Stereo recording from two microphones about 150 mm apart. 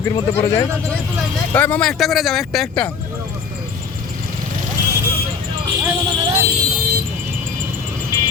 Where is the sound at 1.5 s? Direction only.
10° left (ahead or behind).